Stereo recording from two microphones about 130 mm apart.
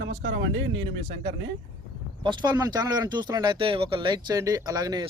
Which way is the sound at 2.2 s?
35° right (ahead or behind).